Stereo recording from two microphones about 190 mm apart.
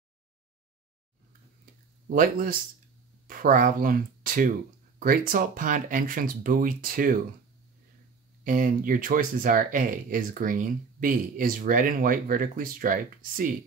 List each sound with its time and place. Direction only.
2.0 s speech: 50° right (ahead or behind)
8.5 s speech: 45° right (ahead or behind)